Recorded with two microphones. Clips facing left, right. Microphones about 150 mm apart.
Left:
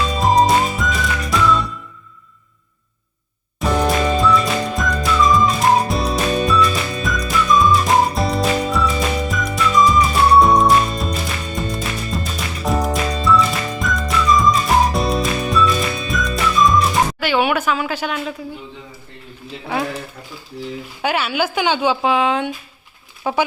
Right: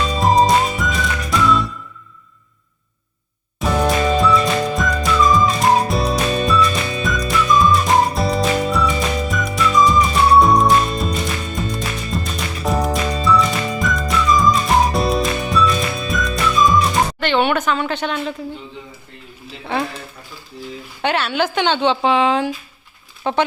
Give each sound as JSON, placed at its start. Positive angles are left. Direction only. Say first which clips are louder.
{"t": 0.1, "sound": "music", "louder": "right 1 dB", "side_deg": 0}
{"t": 3.6, "sound": "music", "louder": "even", "side_deg": 0}
{"t": 21.0, "sound": "speech", "louder": "right 1 dB", "side_deg": 5}